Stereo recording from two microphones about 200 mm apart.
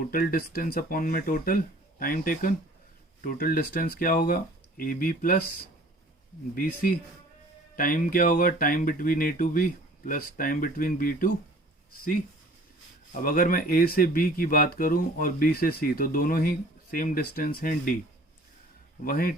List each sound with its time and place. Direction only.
0.1 s speech: 45° left (ahead or behind)
6.5 s speech: 45° left (ahead or behind)
13.2 s speech: 45° left (ahead or behind)
19.0 s speech: 45° left (ahead or behind)